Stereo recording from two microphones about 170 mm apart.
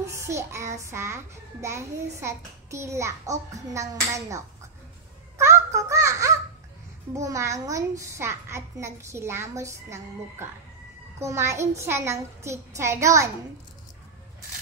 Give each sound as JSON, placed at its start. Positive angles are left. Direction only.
{"t": 0.0, "sound": "a child's voice", "side_deg": -15}
{"t": 5.4, "sound": "babbling", "side_deg": -15}
{"t": 7.2, "sound": "a child's voice", "side_deg": -20}